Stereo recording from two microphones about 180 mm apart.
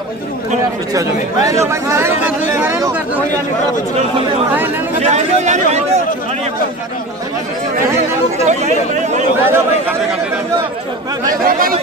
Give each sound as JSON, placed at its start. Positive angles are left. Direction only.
{"t": 1.4, "sound": "speech", "side_deg": -15}
{"t": 5.0, "sound": "speech", "side_deg": -40}
{"t": 8.5, "sound": "speech", "side_deg": -40}
{"t": 9.4, "sound": "speech", "side_deg": -10}
{"t": 11.2, "sound": "speech", "side_deg": -55}